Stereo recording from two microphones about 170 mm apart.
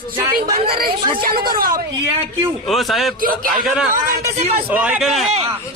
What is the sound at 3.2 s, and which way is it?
Speech, 55° right (ahead or behind).